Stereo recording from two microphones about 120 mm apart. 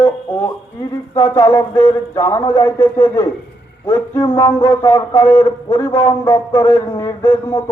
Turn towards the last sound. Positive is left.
turn(degrees=20)  # may be behind; listen again after turning